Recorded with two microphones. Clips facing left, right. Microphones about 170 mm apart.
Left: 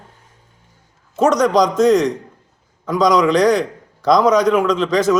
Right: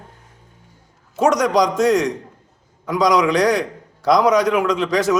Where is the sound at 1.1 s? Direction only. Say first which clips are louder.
Left 2 dB; 15° right (ahead or behind).